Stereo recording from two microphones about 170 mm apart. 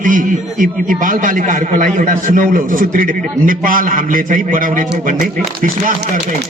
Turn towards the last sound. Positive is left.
turn(degrees=-55)  # may be behind; listen again after turning